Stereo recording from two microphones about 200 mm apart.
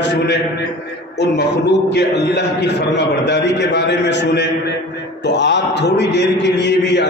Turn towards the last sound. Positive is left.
turn(degrees=60)  # may be behind; listen again after turning